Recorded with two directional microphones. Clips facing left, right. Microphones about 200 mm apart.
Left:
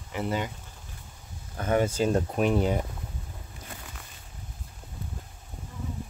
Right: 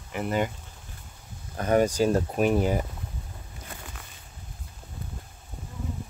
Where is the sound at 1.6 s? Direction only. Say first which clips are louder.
Right 3 dB; 40° right (ahead or behind).